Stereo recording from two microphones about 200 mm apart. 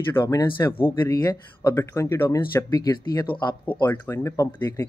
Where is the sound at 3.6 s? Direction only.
10° left (ahead or behind).